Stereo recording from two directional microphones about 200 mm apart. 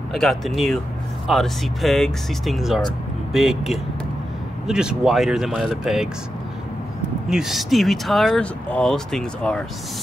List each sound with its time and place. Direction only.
0.1 s speech: centre (ahead or behind)
7.2 s speech: centre (ahead or behind)